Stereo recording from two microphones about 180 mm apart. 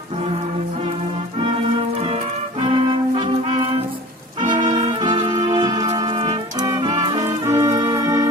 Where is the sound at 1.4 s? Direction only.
30° right (ahead or behind).